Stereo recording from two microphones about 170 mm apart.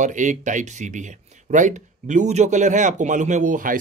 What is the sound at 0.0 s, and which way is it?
Speech, 45° right (ahead or behind).